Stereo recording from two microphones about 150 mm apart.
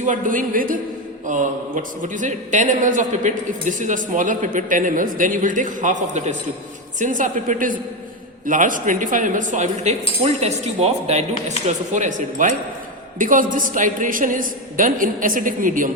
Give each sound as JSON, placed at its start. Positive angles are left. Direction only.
{"t": 0.0, "sound": "speech", "side_deg": -60}